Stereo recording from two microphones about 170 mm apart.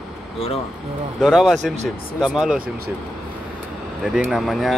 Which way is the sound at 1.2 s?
Centre (ahead or behind).